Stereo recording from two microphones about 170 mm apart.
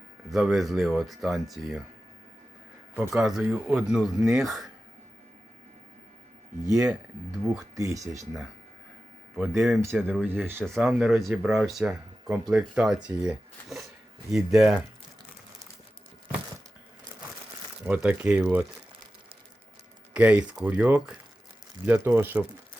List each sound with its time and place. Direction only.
0.3 s speech: centre (ahead or behind)
3.1 s speech: 5° right (ahead or behind)
6.7 s speech: 5° right (ahead or behind)
7.8 s speech: 20° right (ahead or behind)
9.4 s speech: centre (ahead or behind)
9.8 s speech: 10° right (ahead or behind)
17.8 s speech: 10° right (ahead or behind)
20.1 s speech: 5° right (ahead or behind)